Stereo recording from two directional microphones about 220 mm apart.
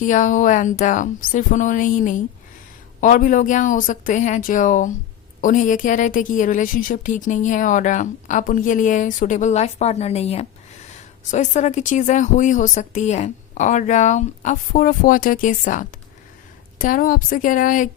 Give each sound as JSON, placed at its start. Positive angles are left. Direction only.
{"t": 0.0, "sound": "a woman's voice", "side_deg": 35}